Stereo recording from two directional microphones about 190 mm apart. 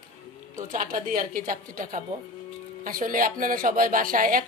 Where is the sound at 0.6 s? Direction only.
45° right (ahead or behind).